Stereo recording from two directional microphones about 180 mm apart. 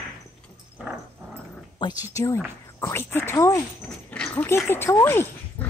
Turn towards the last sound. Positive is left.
turn(degrees=10)  # may be behind; listen again after turning